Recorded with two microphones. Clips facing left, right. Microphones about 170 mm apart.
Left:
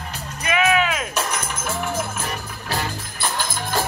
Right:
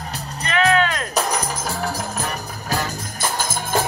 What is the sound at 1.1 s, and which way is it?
Music, 35° right (ahead or behind).